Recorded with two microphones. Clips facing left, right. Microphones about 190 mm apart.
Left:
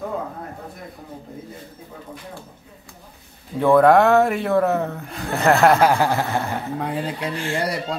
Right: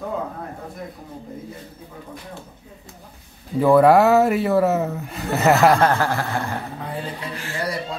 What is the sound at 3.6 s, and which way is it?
Speech, 5° right (ahead or behind).